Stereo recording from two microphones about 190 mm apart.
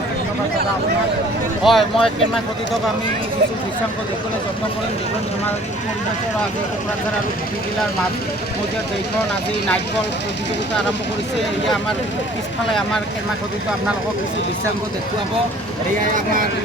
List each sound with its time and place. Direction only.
1.6 s speech: centre (ahead or behind)
16.1 s speech: 45° right (ahead or behind)